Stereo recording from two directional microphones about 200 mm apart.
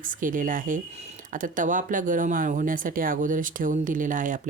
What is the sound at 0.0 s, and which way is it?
Speech, 40° right (ahead or behind).